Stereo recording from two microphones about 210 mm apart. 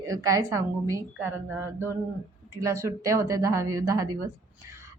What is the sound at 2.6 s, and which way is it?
Speech, 15° right (ahead or behind).